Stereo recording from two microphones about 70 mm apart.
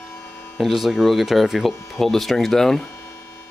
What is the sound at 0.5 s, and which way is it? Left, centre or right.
Speech, centre.